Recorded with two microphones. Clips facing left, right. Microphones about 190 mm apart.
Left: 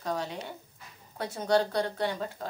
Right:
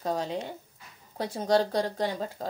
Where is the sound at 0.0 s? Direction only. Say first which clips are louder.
Right 3 dB; 35° right (ahead or behind).